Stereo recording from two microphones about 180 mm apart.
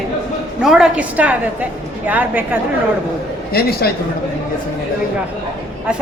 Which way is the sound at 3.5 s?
60° left (ahead or behind).